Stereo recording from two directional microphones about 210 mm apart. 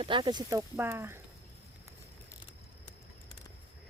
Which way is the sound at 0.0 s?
25° right (ahead or behind).